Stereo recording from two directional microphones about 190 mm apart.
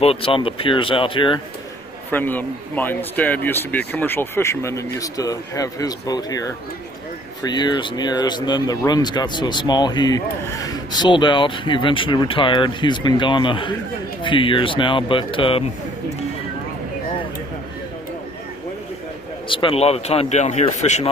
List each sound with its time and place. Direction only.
0.0 s speech: 30° left (ahead or behind)
2.0 s speech: 10° left (ahead or behind); by 15.6 s 25° left (ahead or behind)
19.5 s speech: 30° left (ahead or behind)